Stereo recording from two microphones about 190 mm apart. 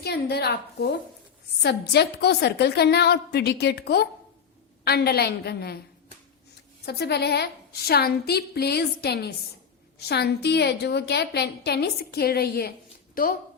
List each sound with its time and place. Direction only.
0.0 s a woman's voice: 60° left (ahead or behind)
6.8 s a woman's voice: 60° left (ahead or behind)